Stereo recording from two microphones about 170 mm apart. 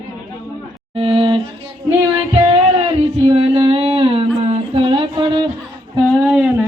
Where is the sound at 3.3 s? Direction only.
35° right (ahead or behind).